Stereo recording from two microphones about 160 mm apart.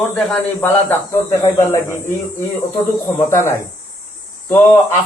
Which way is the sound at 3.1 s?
15° left (ahead or behind).